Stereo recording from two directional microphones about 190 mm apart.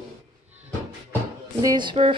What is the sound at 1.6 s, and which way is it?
Speech, 20° right (ahead or behind).